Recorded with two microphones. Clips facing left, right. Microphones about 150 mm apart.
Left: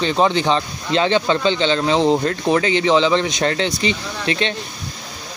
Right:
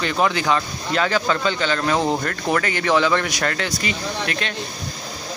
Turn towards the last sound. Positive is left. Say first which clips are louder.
# left 4 dB
turn(degrees=25)  # may be behind; listen again after turning